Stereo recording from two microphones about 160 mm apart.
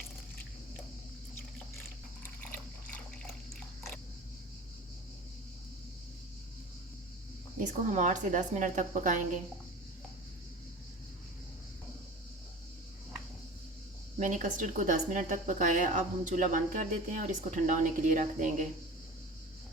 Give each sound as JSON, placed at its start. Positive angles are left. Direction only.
{"t": 7.6, "sound": "a woman's voice", "side_deg": -50}
{"t": 14.2, "sound": "a woman's voice", "side_deg": -50}